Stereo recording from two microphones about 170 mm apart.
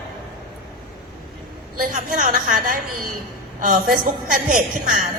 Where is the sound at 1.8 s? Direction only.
50° right (ahead or behind).